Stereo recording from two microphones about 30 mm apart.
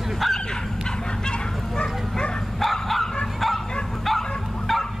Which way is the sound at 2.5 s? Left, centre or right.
Centre.